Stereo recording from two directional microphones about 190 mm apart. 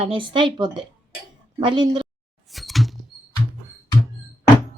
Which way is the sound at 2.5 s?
Centre (ahead or behind).